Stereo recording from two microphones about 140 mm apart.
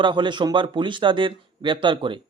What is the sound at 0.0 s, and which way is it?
Speech, 35° right (ahead or behind).